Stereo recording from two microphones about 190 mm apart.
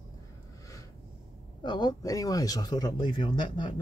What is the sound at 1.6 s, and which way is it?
Speech, 20° left (ahead or behind).